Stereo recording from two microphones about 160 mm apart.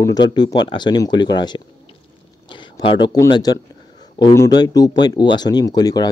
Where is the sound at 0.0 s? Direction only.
25° left (ahead or behind).